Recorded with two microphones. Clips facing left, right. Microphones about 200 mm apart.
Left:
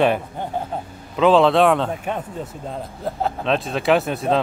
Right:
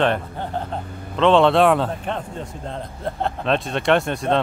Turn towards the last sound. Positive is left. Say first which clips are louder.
# left 1 dB
turn(degrees=5)  # may be behind; listen again after turning